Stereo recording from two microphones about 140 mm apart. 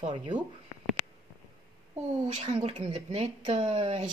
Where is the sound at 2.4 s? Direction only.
40° right (ahead or behind).